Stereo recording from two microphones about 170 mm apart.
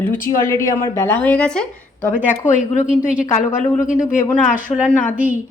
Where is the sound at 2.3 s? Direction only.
50° left (ahead or behind).